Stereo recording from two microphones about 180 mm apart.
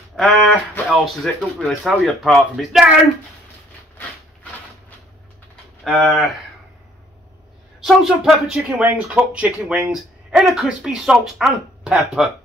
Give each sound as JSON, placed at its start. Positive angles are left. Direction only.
{"t": 0.1, "sound": "speech", "side_deg": 0}
{"t": 5.9, "sound": "speech", "side_deg": 0}
{"t": 7.8, "sound": "speech", "side_deg": -5}